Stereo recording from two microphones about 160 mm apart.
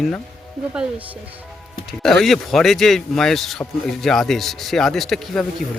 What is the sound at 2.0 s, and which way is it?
A man's voice, centre (ahead or behind).